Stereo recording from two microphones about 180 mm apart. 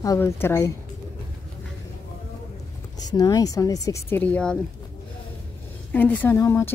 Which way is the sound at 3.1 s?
20° left (ahead or behind).